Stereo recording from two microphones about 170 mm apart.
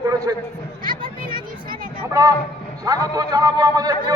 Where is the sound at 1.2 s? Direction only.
55° right (ahead or behind).